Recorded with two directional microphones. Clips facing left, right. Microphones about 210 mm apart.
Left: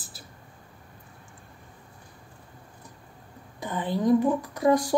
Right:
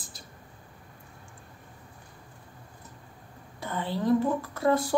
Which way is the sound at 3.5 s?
15° left (ahead or behind).